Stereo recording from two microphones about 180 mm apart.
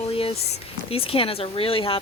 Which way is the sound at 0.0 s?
30° left (ahead or behind).